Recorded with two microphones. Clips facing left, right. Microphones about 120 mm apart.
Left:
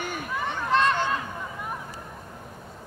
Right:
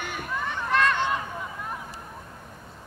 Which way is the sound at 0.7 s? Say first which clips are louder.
Left 1 dB; 20° left (ahead or behind).